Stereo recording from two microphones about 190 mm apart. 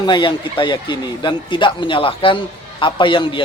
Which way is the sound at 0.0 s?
25° left (ahead or behind).